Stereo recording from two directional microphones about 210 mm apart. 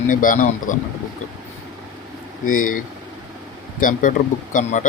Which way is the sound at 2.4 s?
40° left (ahead or behind).